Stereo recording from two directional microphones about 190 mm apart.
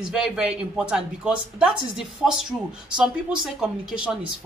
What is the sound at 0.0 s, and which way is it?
Speech, 5° right (ahead or behind).